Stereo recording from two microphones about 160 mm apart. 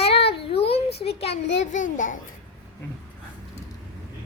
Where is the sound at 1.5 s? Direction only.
50° left (ahead or behind).